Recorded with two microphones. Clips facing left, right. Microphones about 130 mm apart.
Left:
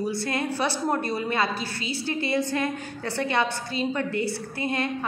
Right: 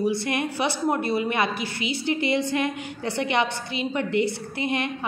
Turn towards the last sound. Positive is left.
turn(degrees=-15)  # may be behind; listen again after turning